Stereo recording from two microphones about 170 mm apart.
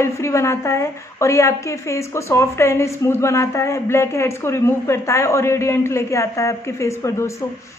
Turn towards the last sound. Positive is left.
turn(degrees=15)  # may be behind; listen again after turning